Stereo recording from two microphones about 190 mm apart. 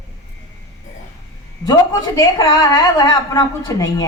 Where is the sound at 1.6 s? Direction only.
20° left (ahead or behind).